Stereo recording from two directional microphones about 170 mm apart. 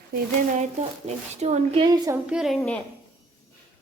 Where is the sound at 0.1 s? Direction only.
40° right (ahead or behind).